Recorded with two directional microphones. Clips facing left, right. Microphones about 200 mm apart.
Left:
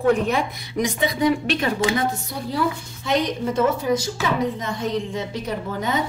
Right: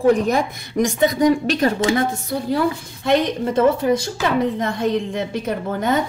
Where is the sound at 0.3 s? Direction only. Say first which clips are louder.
Right 3 dB; 45° right (ahead or behind).